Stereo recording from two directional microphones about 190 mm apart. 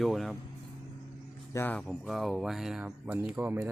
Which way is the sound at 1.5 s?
10° left (ahead or behind).